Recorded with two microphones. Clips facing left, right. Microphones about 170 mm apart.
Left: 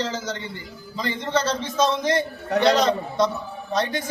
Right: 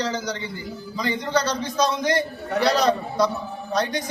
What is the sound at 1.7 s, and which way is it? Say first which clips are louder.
A man's voice: left 1 dB; centre (ahead or behind).